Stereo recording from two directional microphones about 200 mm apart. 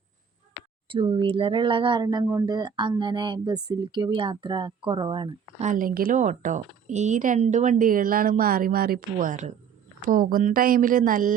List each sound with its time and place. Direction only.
0.9 s speech: 25° right (ahead or behind)
5.6 s speech: 45° right (ahead or behind)